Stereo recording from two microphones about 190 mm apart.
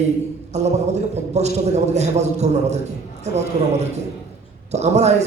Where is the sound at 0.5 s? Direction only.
35° right (ahead or behind).